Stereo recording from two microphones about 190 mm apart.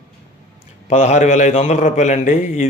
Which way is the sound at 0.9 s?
40° left (ahead or behind).